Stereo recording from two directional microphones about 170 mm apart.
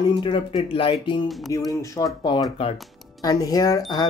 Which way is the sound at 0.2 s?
30° left (ahead or behind).